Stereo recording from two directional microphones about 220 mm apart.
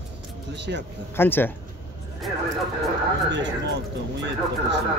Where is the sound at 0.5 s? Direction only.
50° right (ahead or behind).